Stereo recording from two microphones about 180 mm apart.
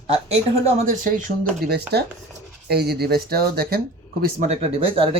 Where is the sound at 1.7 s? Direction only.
65° right (ahead or behind).